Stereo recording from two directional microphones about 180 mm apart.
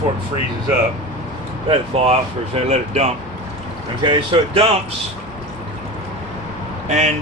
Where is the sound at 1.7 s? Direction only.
35° right (ahead or behind).